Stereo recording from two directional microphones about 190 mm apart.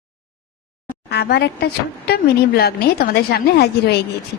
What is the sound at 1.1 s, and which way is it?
A woman's voice, 60° left (ahead or behind).